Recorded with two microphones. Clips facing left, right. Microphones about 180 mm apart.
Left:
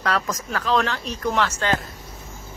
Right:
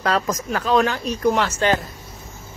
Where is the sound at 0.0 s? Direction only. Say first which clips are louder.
Right 3 dB; 25° right (ahead or behind).